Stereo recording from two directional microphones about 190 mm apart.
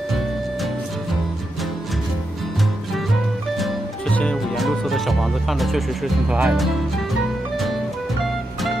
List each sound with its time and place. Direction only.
3.5 s music: centre (ahead or behind)